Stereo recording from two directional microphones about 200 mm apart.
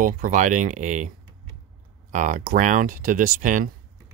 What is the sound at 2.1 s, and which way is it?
Speech, 40° right (ahead or behind).